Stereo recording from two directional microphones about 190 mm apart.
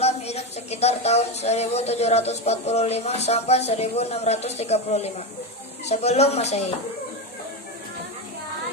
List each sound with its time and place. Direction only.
0.0 s music: 35° left (ahead or behind)